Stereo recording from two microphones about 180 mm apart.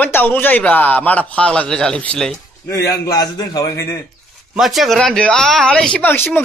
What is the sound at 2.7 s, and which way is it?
A man's voice, 20° left (ahead or behind).